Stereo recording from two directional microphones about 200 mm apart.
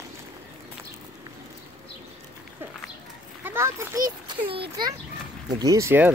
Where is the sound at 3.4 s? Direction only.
10° right (ahead or behind).